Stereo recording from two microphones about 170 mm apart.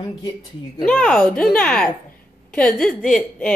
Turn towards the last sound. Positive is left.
turn(degrees=5)  # may be behind; listen again after turning